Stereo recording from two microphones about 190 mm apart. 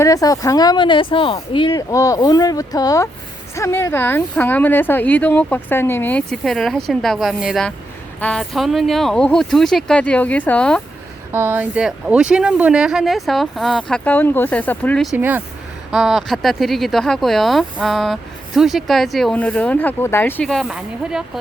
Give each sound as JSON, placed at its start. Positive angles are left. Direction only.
{"t": 0.0, "sound": "speech", "side_deg": 20}
{"t": 11.3, "sound": "speech", "side_deg": -10}